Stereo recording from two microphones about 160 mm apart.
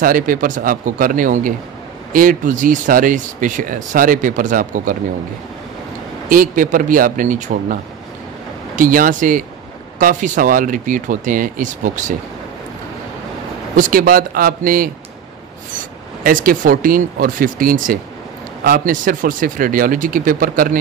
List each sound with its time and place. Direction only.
0.0 s speech: 60° right (ahead or behind)
6.2 s speech: 55° right (ahead or behind)
13.7 s speech: 60° right (ahead or behind)
16.3 s speech: 60° right (ahead or behind)